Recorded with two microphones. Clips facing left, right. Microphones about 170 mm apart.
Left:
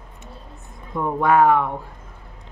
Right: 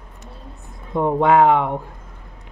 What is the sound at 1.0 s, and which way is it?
Speech, 25° right (ahead or behind).